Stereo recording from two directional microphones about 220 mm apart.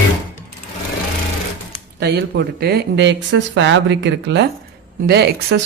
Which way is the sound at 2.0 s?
50° right (ahead or behind).